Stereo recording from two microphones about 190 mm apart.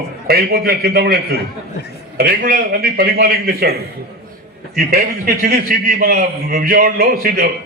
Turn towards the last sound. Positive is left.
turn(degrees=-50)  # may be behind; listen again after turning